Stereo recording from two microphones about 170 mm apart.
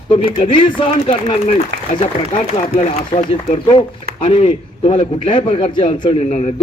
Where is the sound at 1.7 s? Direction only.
90° right.